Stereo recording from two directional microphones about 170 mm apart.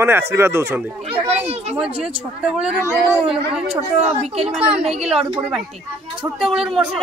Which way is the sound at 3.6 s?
40° right (ahead or behind).